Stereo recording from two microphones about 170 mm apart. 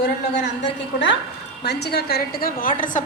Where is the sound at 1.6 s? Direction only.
75° left (ahead or behind); by 3.0 s 50° left (ahead or behind).